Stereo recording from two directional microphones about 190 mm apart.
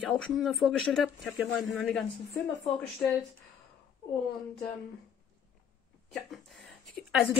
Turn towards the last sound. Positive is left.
turn(degrees=0)  # may be behind; listen again after turning